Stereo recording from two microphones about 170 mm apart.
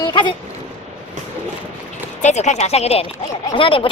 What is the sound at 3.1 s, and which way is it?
Speech, 25° left (ahead or behind).